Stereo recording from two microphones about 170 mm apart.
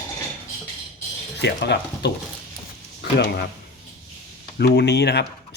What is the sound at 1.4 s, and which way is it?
Speech, 80° left.